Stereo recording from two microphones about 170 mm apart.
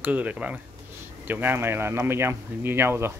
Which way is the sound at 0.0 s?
10° right (ahead or behind).